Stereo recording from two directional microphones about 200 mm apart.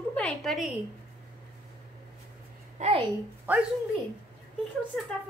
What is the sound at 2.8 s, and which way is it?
Speech, 30° right (ahead or behind).